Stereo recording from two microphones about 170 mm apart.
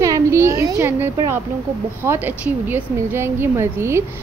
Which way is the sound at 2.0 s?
10° right (ahead or behind).